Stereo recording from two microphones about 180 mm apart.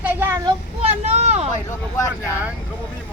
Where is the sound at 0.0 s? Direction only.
10° right (ahead or behind).